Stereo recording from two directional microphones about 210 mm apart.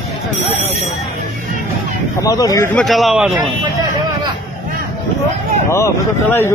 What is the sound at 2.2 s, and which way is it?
Speech, 15° left (ahead or behind).